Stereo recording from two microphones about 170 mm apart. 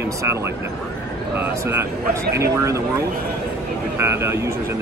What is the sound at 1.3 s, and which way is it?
Speech, 15° right (ahead or behind).